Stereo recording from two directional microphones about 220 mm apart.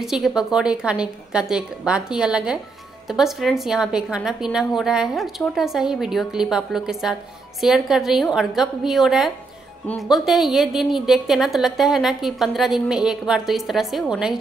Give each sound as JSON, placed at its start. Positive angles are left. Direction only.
{"t": 0.0, "sound": "a woman's voice", "side_deg": 0}